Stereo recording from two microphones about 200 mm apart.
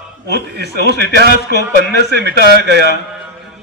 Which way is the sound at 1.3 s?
55° left (ahead or behind).